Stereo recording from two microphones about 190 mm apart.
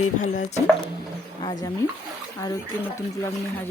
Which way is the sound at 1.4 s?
20° left (ahead or behind).